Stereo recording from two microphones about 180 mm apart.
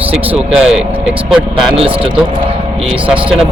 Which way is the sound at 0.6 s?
5° right (ahead or behind).